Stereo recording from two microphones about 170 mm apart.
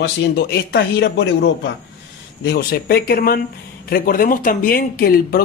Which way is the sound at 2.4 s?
65° left (ahead or behind).